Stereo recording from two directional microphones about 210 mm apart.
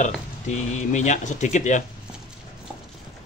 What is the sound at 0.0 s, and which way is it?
Speech, 35° left (ahead or behind).